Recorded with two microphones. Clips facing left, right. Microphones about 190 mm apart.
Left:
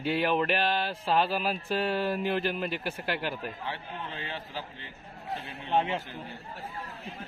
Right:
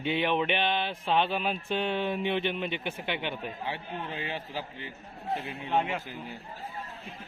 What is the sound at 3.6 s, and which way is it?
A man's voice, 15° right (ahead or behind).